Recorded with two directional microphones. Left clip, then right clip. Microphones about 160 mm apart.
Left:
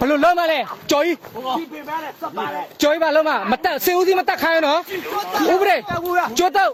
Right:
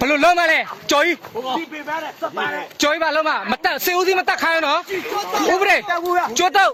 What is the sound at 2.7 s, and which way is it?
Speech, 25° left (ahead or behind).